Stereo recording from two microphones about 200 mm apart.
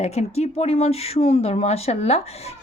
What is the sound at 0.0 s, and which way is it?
Speech, 30° left (ahead or behind).